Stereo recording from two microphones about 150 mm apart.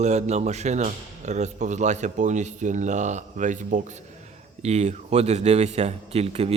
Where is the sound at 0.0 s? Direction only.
50° right (ahead or behind).